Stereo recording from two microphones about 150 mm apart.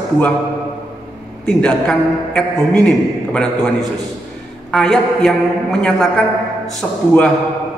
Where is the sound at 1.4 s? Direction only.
5° left (ahead or behind).